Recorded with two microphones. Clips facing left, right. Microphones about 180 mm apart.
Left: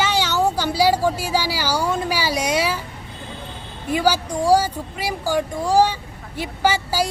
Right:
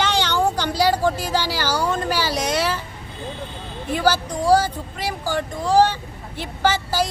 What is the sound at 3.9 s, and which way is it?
Speech, 10° left (ahead or behind).